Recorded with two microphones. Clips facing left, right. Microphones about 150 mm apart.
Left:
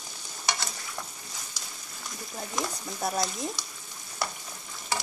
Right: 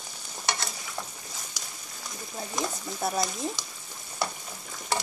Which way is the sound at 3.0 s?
Centre (ahead or behind).